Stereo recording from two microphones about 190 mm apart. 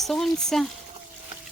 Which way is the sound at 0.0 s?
Centre (ahead or behind).